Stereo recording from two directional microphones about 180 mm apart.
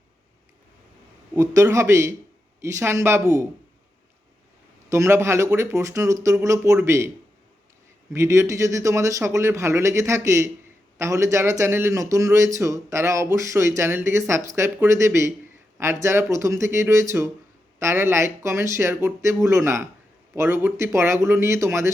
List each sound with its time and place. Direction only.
1.4 s speech: 15° right (ahead or behind)
4.9 s speech: 15° right (ahead or behind)
8.1 s speech: 15° right (ahead or behind)